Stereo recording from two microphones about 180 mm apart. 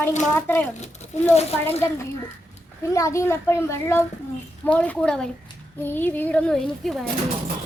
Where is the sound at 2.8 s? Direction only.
15° left (ahead or behind); by 7.0 s centre (ahead or behind).